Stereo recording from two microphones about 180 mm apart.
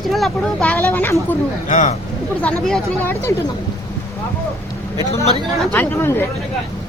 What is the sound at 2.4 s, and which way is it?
Speech, 5° left (ahead or behind).